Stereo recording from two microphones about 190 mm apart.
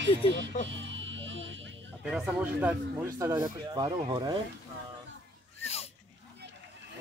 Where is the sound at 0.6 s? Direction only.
75° right (ahead or behind).